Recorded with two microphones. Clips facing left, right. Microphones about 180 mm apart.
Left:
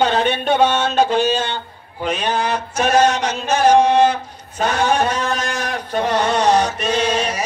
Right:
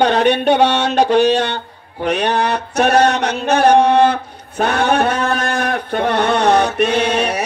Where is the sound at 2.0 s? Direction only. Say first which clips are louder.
Right 4 dB; 65° right (ahead or behind).